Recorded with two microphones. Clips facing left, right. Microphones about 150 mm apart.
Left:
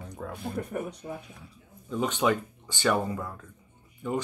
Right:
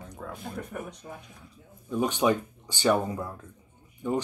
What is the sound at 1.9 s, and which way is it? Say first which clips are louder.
Speech: right 1 dB; 15° right (ahead or behind).